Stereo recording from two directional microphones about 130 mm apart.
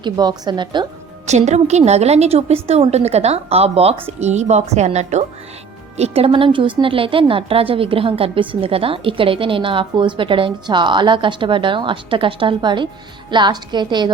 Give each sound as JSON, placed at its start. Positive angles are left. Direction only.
{"t": 0.0, "sound": "a woman's voice", "side_deg": -35}
{"t": 1.3, "sound": "a woman's voice", "side_deg": -60}
{"t": 6.0, "sound": "a woman's voice", "side_deg": -50}